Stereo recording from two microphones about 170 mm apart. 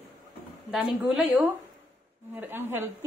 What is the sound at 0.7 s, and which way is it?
Speech, centre (ahead or behind).